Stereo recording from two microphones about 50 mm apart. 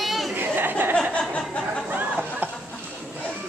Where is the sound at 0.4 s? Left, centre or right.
Right.